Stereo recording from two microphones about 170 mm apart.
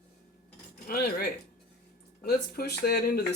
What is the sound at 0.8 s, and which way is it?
Speech, 60° left (ahead or behind).